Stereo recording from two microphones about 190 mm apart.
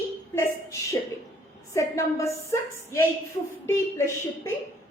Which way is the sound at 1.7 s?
15° left (ahead or behind).